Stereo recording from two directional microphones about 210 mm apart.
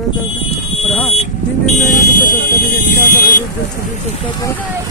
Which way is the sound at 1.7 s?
45° left (ahead or behind).